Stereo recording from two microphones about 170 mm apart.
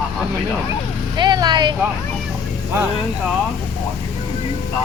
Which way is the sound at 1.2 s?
25° right (ahead or behind).